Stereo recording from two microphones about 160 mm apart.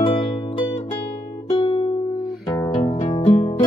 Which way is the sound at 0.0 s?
35° left (ahead or behind).